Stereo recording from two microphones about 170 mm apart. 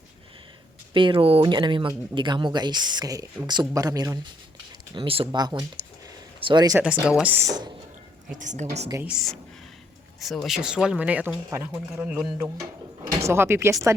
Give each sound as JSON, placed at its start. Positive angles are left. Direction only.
{"t": 0.9, "sound": "speech", "side_deg": -30}
{"t": 4.9, "sound": "speech", "side_deg": -35}
{"t": 7.1, "sound": "speech", "side_deg": -10}
{"t": 8.3, "sound": "a woman's voice", "side_deg": -45}
{"t": 9.0, "sound": "speech", "side_deg": -5}
{"t": 13.1, "sound": "speech", "side_deg": -15}